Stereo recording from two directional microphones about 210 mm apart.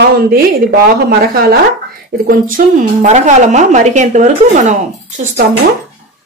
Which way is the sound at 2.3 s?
40° right (ahead or behind).